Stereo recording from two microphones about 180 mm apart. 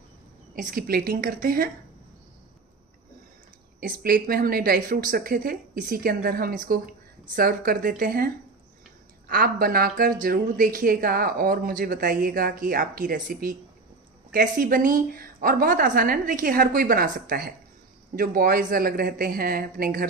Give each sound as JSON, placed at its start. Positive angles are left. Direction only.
{"t": 0.6, "sound": "a woman's voice", "side_deg": -50}
{"t": 3.8, "sound": "speech", "side_deg": -55}
{"t": 9.3, "sound": "speech", "side_deg": -55}